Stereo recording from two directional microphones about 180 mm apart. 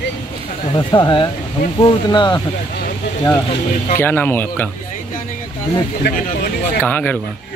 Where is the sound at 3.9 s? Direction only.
10° left (ahead or behind).